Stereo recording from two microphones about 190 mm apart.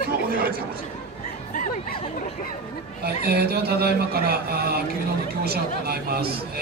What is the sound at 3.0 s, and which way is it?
Speech, 55° right (ahead or behind).